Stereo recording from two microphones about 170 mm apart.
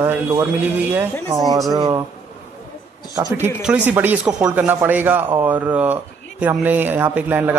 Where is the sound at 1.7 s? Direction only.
20° right (ahead or behind).